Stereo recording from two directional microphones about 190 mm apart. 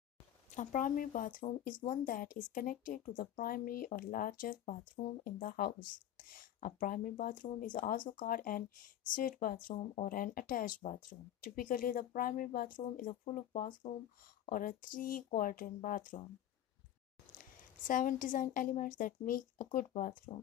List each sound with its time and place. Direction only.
0.6 s speech: 45° left (ahead or behind)
17.8 s speech: 45° left (ahead or behind)